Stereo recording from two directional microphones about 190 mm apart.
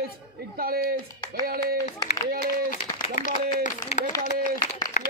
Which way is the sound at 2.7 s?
40° left (ahead or behind).